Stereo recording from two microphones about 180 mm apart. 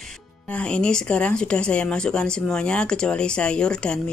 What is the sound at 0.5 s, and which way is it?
Speech, 5° left (ahead or behind).